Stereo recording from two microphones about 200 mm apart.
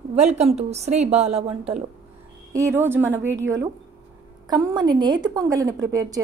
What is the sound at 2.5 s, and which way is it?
A woman's voice, 15° right (ahead or behind).